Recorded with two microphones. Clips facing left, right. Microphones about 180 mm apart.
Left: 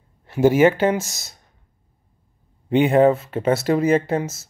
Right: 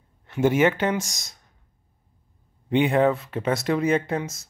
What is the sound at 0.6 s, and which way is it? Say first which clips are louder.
Speech: left 5 dB; 30° left (ahead or behind).